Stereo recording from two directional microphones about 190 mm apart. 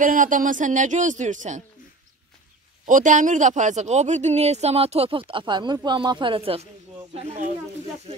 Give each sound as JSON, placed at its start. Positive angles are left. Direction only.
{"t": 0.0, "sound": "speech", "side_deg": -45}
{"t": 2.9, "sound": "speech", "side_deg": -40}